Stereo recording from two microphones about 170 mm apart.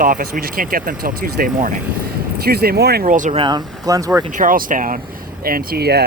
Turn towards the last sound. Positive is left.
turn(degrees=-70)  # may be behind; listen again after turning